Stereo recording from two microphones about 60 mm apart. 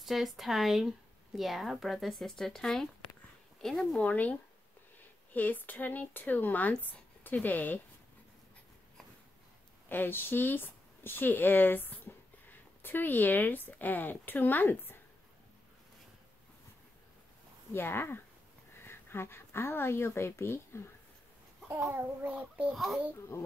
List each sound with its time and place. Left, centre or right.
0.0 s speech: centre
4.0 s a woman's voice: left
9.8 s speech: left
17.7 s a woman's voice: left
22.2 s speech: right
23.3 s speech: left